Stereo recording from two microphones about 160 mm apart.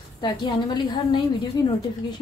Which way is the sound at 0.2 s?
30° left (ahead or behind).